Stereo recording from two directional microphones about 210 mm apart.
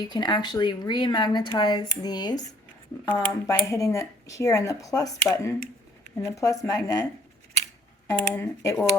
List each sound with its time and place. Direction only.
0.0 s speech: 20° left (ahead or behind)
8.3 s speech: 15° left (ahead or behind)